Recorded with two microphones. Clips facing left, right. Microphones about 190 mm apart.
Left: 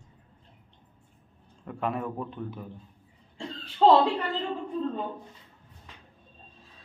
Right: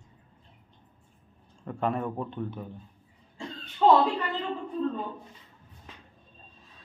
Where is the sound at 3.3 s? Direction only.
30° left (ahead or behind).